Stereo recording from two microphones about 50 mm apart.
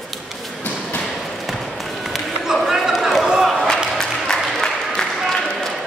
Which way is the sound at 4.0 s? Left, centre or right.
Centre.